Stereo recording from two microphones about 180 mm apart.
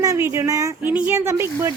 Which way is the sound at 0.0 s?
15° right (ahead or behind).